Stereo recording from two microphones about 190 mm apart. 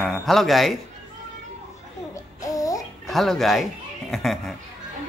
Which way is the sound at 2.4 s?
20° left (ahead or behind).